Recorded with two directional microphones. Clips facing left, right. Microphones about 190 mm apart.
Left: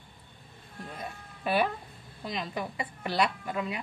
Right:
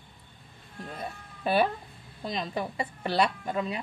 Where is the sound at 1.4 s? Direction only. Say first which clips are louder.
Right 2 dB; 30° right (ahead or behind).